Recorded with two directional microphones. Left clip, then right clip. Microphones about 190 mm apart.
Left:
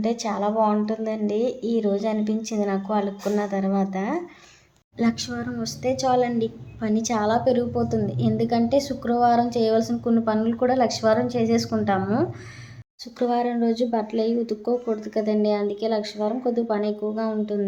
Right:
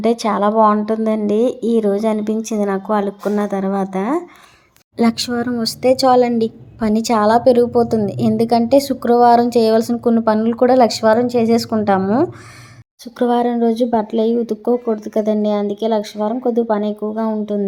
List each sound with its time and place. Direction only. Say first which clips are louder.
0.0 s a woman's voice: right 9 dB; 40° right (ahead or behind)